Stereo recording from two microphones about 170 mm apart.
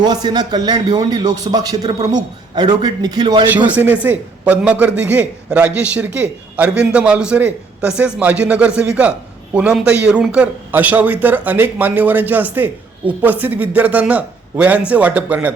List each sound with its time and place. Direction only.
0.0 s a man's voice: 25° right (ahead or behind)
3.8 s speech: 10° right (ahead or behind)